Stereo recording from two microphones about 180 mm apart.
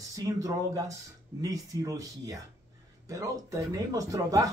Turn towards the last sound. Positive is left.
turn(degrees=-20)  # may be behind; listen again after turning